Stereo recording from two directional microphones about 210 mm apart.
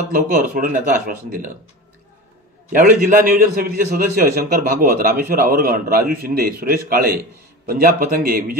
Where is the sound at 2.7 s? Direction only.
40° right (ahead or behind).